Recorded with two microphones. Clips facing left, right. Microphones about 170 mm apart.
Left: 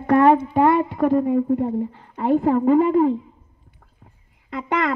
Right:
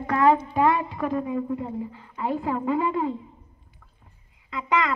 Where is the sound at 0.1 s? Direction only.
60° left (ahead or behind).